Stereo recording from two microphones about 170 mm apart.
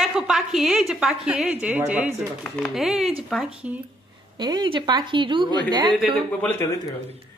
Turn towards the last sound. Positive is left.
turn(degrees=10)  # may be behind; listen again after turning